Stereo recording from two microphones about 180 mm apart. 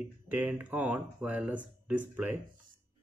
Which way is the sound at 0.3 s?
10° right (ahead or behind).